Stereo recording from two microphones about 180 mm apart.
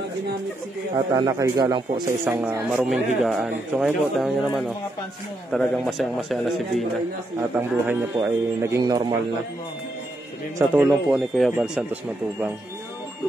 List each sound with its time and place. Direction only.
0.9 s speech: 25° right (ahead or behind)
2.7 s speech: centre (ahead or behind)
7.5 s speech: 10° right (ahead or behind)
10.7 s speech: 5° right (ahead or behind)